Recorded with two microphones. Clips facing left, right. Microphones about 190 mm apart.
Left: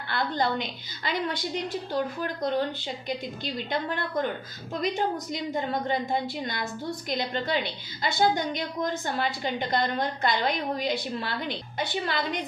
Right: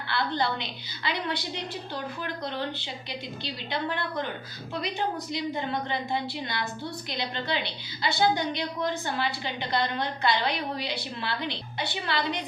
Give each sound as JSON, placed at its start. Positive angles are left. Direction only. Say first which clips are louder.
{"t": 0.1, "sound": "a woman's voice", "louder": "left 1 dB", "side_deg": 45}